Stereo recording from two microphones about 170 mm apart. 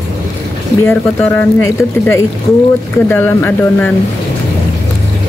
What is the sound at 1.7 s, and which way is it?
Speech, 15° left (ahead or behind).